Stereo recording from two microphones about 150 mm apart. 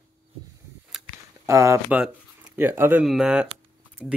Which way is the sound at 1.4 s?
20° right (ahead or behind).